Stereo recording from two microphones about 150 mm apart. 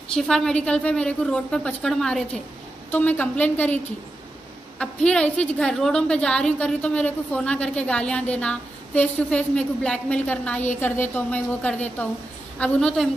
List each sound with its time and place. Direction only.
0.1 s a woman's voice: 5° left (ahead or behind)